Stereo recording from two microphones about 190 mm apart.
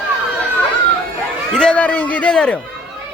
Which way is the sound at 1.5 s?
5° left (ahead or behind).